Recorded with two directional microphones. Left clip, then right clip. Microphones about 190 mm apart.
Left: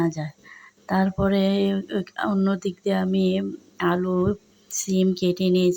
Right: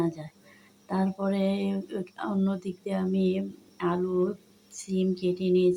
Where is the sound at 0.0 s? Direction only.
25° left (ahead or behind).